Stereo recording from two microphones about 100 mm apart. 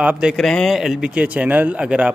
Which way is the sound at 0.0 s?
10° right (ahead or behind).